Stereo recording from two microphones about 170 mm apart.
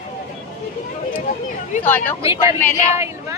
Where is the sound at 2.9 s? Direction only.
15° right (ahead or behind).